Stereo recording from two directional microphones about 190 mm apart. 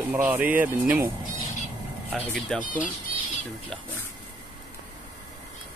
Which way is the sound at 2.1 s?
5° left (ahead or behind).